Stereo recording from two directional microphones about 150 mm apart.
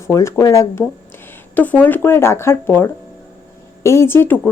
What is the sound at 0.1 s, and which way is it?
Speech, 20° left (ahead or behind).